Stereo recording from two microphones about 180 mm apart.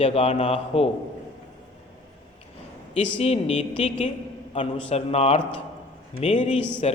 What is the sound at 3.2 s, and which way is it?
A man's voice, 35° left (ahead or behind).